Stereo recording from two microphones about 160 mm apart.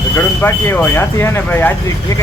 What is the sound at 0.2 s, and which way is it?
Speech, 15° left (ahead or behind).